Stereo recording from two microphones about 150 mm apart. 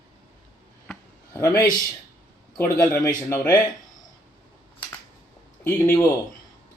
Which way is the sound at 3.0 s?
20° left (ahead or behind).